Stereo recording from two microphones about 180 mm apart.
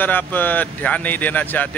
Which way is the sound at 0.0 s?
10° left (ahead or behind).